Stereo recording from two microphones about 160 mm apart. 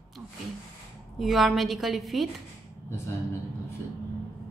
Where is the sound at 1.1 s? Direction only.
Centre (ahead or behind).